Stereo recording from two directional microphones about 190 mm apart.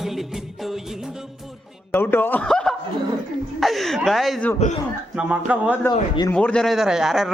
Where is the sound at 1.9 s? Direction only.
10° left (ahead or behind).